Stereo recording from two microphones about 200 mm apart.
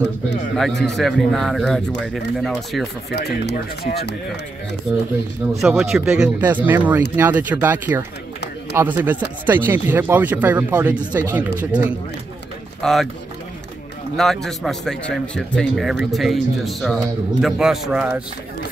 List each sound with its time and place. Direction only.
0.6 s speech: centre (ahead or behind)
3.1 s speech: 55° left (ahead or behind)
5.7 s speech: centre (ahead or behind)
12.8 s speech: centre (ahead or behind)
14.1 s speech: centre (ahead or behind)